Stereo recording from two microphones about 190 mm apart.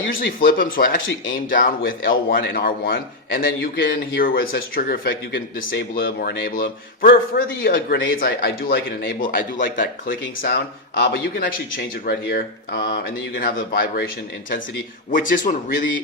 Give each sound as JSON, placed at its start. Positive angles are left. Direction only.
{"t": 0.3, "sound": "a man's voice", "side_deg": 45}
{"t": 15.1, "sound": "a man's voice", "side_deg": 45}